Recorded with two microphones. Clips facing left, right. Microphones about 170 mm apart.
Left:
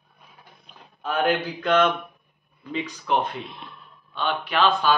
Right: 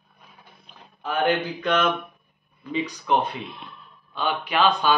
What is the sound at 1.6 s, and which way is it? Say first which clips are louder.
Speech: left 3 dB; 10° right (ahead or behind).